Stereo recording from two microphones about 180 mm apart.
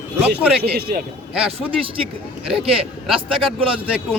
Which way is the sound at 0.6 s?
60° right (ahead or behind).